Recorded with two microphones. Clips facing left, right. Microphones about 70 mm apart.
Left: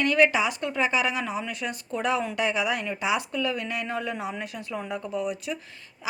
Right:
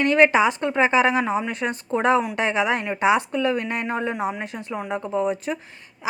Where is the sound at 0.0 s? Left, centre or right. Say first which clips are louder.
Right 5 dB; right.